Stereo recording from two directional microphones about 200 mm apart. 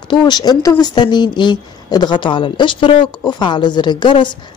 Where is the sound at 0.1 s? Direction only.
20° left (ahead or behind).